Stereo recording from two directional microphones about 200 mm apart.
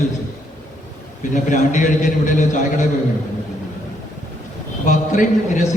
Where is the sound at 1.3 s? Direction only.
40° left (ahead or behind).